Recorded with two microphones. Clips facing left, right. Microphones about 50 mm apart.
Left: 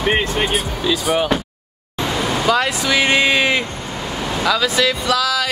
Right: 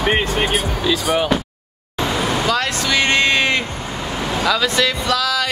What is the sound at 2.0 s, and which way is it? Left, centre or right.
Vehicle, centre.